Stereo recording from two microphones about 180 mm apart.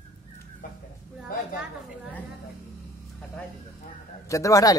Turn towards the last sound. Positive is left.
turn(degrees=20)  # may be behind; listen again after turning